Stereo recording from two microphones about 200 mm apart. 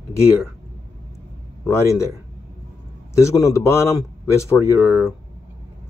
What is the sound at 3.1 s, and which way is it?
A man's voice, 15° left (ahead or behind).